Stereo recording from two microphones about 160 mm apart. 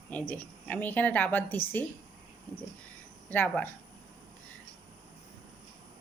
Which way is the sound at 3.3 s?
10° left (ahead or behind).